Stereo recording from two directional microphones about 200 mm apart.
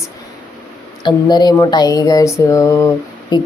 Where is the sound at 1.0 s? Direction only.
20° left (ahead or behind).